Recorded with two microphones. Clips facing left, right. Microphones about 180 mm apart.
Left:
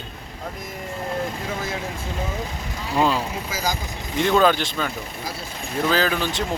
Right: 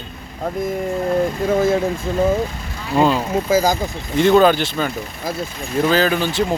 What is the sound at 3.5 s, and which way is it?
Speech, 50° right (ahead or behind).